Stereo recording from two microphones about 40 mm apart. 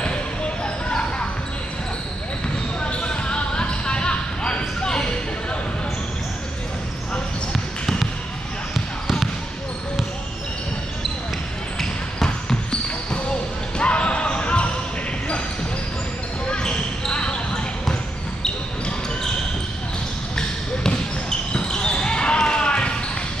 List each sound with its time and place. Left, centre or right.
0.8 s basketball bounce: left
2.8 s basketball bounce: left
11.8 s basketball bounce: centre
13.7 s basketball bounce: left
16.4 s basketball bounce: left
20.3 s basketball bounce: centre